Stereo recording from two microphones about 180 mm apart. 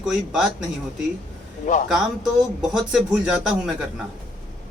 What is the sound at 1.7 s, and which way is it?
Speech, 45° left (ahead or behind).